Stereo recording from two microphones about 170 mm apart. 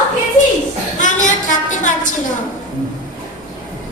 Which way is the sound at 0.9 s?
50° left (ahead or behind).